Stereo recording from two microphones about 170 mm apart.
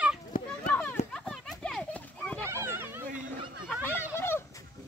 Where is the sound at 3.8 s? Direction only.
15° left (ahead or behind).